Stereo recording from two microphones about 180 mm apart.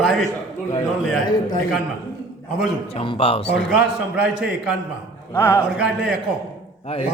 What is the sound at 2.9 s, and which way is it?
Speech, 30° left (ahead or behind).